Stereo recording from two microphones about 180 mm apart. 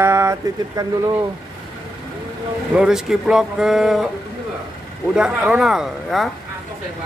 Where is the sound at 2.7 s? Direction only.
5° right (ahead or behind).